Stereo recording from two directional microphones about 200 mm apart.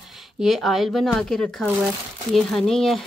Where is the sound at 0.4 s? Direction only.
Centre (ahead or behind).